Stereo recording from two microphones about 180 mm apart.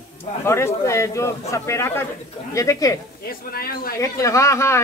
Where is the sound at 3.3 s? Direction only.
55° left (ahead or behind).